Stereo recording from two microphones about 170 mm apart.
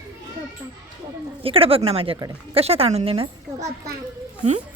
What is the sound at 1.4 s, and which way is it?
A woman's voice, 35° right (ahead or behind).